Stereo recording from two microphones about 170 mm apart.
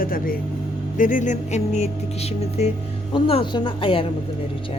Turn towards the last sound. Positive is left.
turn(degrees=30)  # may be behind; listen again after turning